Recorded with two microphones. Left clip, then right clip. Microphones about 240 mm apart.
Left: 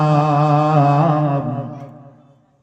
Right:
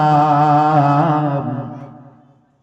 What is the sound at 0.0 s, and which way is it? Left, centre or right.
Music, right.